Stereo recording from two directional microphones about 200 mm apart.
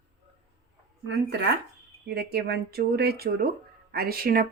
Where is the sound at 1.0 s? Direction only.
60° right (ahead or behind).